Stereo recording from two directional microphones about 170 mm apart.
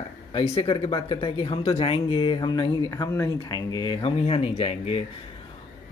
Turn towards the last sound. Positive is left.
turn(degrees=35)  # may be behind; listen again after turning